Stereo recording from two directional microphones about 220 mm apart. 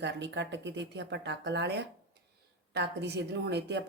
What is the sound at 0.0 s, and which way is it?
A woman's voice, 50° right (ahead or behind).